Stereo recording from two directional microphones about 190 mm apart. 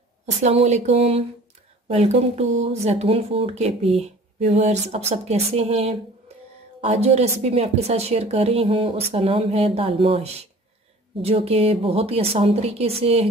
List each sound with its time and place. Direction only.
0.4 s a woman's voice: 35° right (ahead or behind)
2.5 s speech: 80° right
2.8 s a woman's voice: 35° right (ahead or behind)